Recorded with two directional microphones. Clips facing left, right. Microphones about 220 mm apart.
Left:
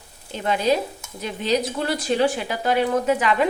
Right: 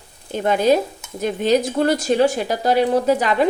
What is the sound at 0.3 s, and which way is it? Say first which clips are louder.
Speech: right 5 dB; 50° right (ahead or behind).